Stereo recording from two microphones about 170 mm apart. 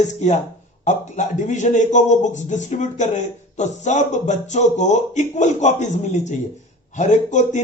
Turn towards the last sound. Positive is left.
turn(degrees=45)  # may be behind; listen again after turning